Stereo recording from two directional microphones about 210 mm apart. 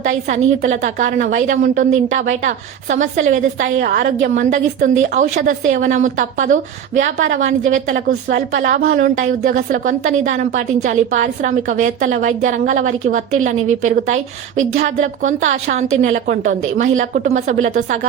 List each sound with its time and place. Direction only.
0.0 s a woman's voice: 35° right (ahead or behind)